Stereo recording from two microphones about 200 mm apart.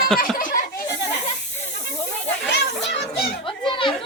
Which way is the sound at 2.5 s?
60° left (ahead or behind).